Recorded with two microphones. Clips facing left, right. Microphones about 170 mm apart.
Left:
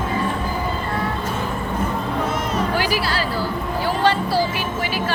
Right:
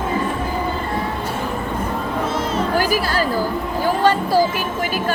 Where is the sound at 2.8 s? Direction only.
45° right (ahead or behind).